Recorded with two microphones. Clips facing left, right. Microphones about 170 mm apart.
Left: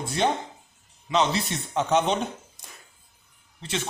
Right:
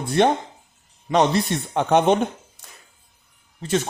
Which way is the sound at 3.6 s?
45° right (ahead or behind).